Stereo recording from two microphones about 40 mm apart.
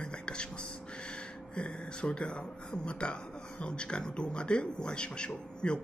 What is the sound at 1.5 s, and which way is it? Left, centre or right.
Speech, left.